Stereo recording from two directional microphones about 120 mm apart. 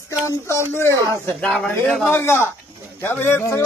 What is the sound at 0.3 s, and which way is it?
Speech, 20° left (ahead or behind).